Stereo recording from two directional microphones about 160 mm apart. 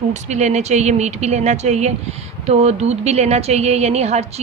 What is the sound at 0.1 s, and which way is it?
Speech, 45° right (ahead or behind).